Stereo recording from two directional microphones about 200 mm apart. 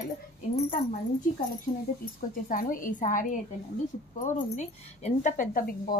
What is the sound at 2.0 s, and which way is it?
A woman's voice, 45° left (ahead or behind).